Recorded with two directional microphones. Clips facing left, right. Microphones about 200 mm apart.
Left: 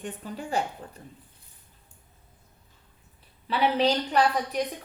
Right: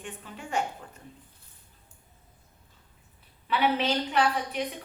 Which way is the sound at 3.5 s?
35° left (ahead or behind).